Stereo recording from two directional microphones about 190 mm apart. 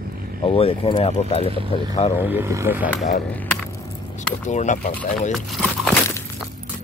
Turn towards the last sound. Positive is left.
turn(degrees=0)  # may be behind; listen again after turning